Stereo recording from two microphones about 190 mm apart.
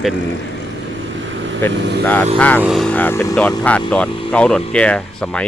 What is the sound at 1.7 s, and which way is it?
Speech, 65° right (ahead or behind).